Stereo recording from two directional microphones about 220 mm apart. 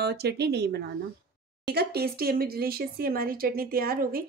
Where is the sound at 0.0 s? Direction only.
50° right (ahead or behind).